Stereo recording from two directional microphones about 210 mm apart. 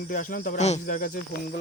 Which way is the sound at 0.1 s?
40° left (ahead or behind).